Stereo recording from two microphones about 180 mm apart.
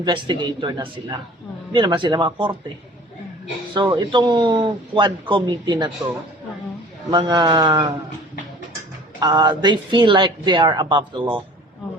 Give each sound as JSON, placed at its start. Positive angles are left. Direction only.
{"t": 0.0, "sound": "a woman's voice", "side_deg": -25}
{"t": 3.8, "sound": "a woman's voice", "side_deg": -25}
{"t": 7.1, "sound": "a woman's voice", "side_deg": -25}
{"t": 9.2, "sound": "a woman's voice", "side_deg": -25}